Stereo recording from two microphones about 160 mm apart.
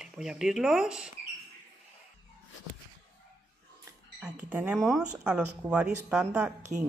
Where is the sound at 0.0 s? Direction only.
5° right (ahead or behind).